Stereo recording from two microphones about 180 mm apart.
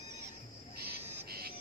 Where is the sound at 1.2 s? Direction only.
60° right (ahead or behind).